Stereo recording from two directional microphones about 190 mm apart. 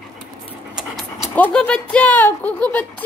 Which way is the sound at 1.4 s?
5° left (ahead or behind).